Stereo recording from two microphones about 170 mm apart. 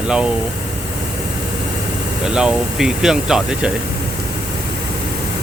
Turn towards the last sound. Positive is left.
turn(degrees=-5)  # may be behind; listen again after turning